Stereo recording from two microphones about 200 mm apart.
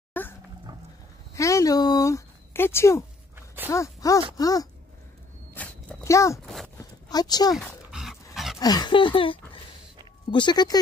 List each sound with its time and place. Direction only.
0.1 s dog: 10° left (ahead or behind)
0.7 s goat: 20° right (ahead or behind)
1.3 s speech: 15° left (ahead or behind)
3.3 s dog: 10° right (ahead or behind)
3.7 s speech: 15° left (ahead or behind)
5.5 s walk: 5° left (ahead or behind)
6.4 s speech: centre (ahead or behind)
6.8 s a sound: 20° left (ahead or behind)
7.5 s dog: centre (ahead or behind)
8.5 s speech: 20° left (ahead or behind)